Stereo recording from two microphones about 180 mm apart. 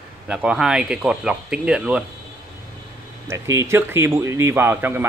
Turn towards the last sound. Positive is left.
turn(degrees=-10)  # may be behind; listen again after turning